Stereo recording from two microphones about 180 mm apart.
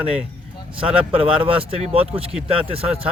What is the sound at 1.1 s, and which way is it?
Speech, 30° right (ahead or behind).